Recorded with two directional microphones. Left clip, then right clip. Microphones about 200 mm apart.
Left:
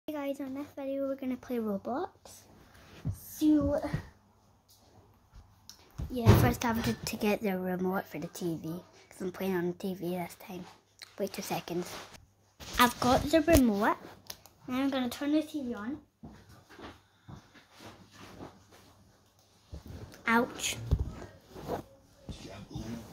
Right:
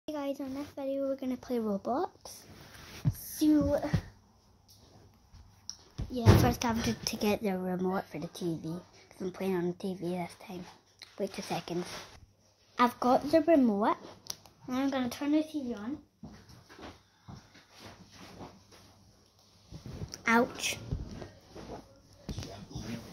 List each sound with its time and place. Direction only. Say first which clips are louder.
0.0 s speech: even; 10° right (ahead or behind)
1.9 s speech: right 3 dB; 25° right (ahead or behind)
2.9 s a sound: right 5 dB; 40° right (ahead or behind)
5.7 s a sound: right 8 dB; 10° right (ahead or behind)
6.1 s a woman's voice: even; 5° right (ahead or behind)
20.1 s a woman's voice: right 1 dB; 30° right (ahead or behind)